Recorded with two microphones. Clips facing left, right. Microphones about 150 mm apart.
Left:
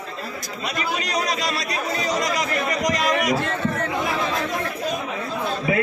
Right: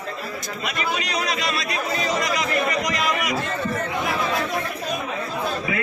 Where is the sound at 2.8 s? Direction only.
40° left (ahead or behind).